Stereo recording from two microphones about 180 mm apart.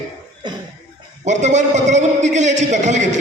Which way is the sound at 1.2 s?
40° right (ahead or behind).